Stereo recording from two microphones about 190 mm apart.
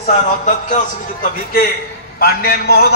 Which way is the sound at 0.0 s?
40° left (ahead or behind).